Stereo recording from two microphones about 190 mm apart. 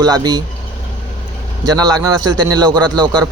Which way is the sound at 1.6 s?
20° right (ahead or behind).